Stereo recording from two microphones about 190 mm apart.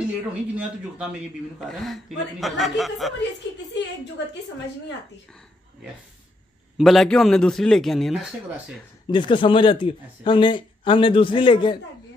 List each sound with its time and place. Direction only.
0.3 s speech: 5° right (ahead or behind)
6.8 s speech: centre (ahead or behind)
9.1 s speech: 25° left (ahead or behind)